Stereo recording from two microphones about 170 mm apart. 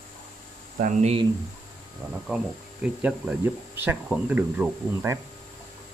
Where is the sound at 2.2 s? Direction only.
5° right (ahead or behind).